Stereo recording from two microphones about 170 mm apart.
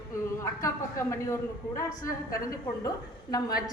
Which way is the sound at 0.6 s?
15° left (ahead or behind).